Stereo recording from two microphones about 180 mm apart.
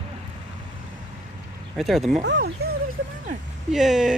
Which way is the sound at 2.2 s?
70° right (ahead or behind).